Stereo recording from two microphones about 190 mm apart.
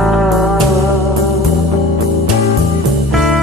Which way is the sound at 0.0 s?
Centre (ahead or behind).